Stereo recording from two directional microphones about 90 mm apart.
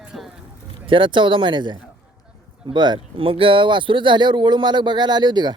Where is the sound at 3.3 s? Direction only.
85° right; by 5.6 s 55° right (ahead or behind).